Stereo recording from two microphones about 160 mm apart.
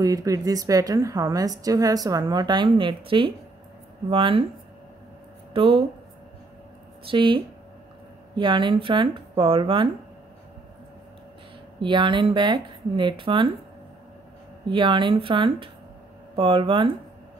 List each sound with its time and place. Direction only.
0.0 s a woman's voice: 20° right (ahead or behind)
5.5 s speech: 35° right (ahead or behind)
7.1 s speech: 30° right (ahead or behind)
11.8 s speech: 30° right (ahead or behind)
14.7 s speech: 30° right (ahead or behind)